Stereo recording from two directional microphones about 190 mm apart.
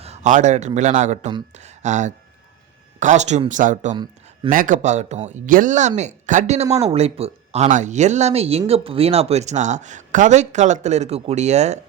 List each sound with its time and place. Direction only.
0.0 s speech: 35° right (ahead or behind)